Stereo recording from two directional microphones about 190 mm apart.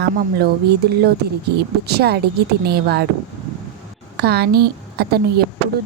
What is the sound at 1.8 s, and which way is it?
A woman's voice, 55° right (ahead or behind).